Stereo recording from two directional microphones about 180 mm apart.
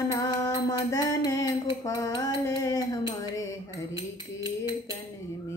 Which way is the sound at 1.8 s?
20° left (ahead or behind).